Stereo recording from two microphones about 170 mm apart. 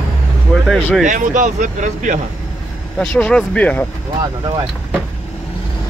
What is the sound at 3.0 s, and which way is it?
Speech, 5° left (ahead or behind).